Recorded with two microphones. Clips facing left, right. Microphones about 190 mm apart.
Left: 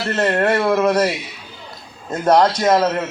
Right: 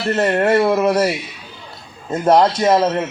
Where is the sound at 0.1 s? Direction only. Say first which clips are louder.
Right 2 dB; 20° right (ahead or behind).